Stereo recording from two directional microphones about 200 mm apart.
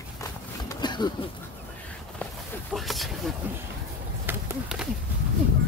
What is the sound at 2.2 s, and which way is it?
Walk, 5° left (ahead or behind).